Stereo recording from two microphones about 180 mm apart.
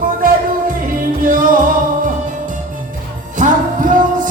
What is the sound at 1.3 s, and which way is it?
Music, 50° right (ahead or behind).